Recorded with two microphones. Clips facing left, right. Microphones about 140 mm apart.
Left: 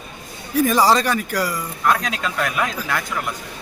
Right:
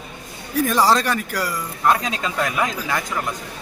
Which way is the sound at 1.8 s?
20° right (ahead or behind).